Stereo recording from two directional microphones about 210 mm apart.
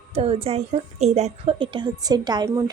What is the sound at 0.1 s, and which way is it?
A woman's voice, 30° right (ahead or behind).